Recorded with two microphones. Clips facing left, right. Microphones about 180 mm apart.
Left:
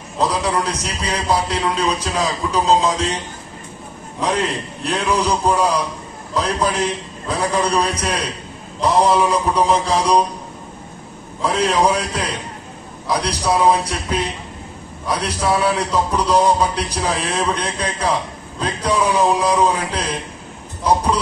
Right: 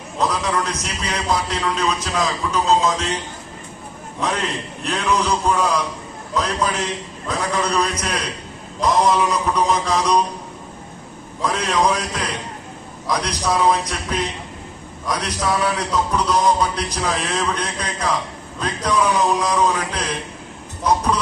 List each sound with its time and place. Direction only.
0.2 s a man's voice: 30° left (ahead or behind)
4.8 s a man's voice: 35° left (ahead or behind)
11.4 s a man's voice: 30° left (ahead or behind)